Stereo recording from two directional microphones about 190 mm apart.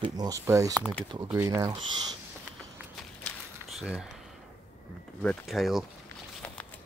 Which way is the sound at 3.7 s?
5° right (ahead or behind).